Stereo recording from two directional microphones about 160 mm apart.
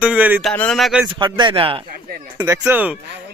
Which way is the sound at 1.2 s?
30° right (ahead or behind).